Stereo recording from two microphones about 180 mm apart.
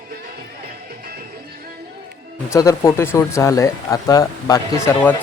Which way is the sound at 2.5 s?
15° left (ahead or behind).